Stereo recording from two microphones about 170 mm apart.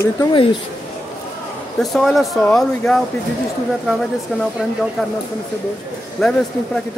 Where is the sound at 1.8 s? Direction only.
Centre (ahead or behind).